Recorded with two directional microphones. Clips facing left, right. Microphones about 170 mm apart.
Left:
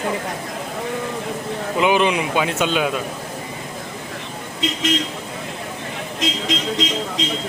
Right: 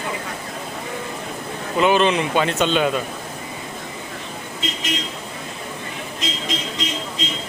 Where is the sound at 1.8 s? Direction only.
15° left (ahead or behind).